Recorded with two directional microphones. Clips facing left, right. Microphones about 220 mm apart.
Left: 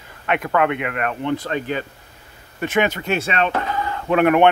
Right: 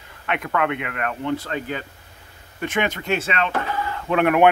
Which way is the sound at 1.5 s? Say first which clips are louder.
Left 4 dB; 25° left (ahead or behind).